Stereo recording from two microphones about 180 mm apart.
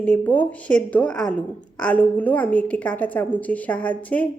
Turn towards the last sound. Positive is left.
turn(degrees=10)  # may be behind; listen again after turning